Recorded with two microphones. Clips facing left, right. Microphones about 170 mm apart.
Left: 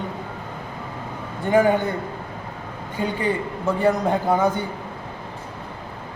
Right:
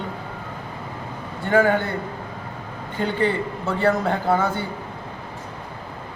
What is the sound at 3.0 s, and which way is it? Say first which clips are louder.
A man's voice: right 2 dB; 15° left (ahead or behind).